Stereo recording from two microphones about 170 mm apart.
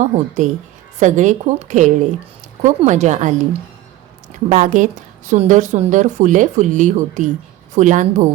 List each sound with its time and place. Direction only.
0.0 s speech: 45° right (ahead or behind)
4.4 s speech: 45° right (ahead or behind)